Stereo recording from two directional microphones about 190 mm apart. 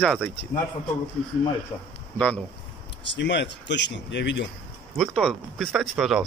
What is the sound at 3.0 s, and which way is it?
Speech, 70° left (ahead or behind).